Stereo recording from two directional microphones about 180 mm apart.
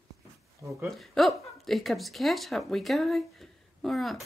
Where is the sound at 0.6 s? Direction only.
15° right (ahead or behind).